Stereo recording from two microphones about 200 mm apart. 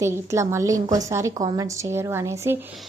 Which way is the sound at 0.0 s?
15° right (ahead or behind).